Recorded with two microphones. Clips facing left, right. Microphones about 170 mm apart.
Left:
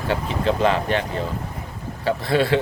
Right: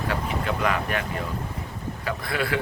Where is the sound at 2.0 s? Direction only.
30° left (ahead or behind).